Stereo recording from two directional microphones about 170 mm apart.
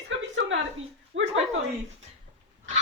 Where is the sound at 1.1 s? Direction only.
90° right.